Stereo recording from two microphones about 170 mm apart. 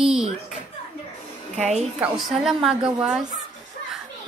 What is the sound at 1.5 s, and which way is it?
Speech, 45° right (ahead or behind).